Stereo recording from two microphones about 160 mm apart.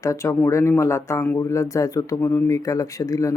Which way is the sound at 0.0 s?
20° left (ahead or behind).